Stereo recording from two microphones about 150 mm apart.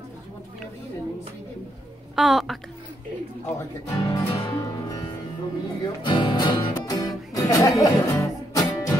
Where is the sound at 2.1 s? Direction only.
Centre (ahead or behind).